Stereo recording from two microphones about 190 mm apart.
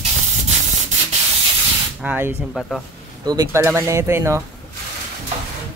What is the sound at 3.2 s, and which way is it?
Speech, 20° right (ahead or behind).